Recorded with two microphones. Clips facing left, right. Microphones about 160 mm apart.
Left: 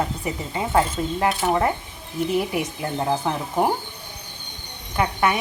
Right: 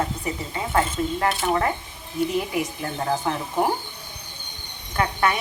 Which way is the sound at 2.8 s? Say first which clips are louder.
Left 2 dB; 20° left (ahead or behind).